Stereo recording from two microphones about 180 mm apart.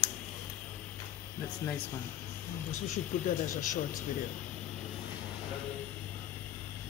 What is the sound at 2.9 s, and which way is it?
Speech, 45° left (ahead or behind).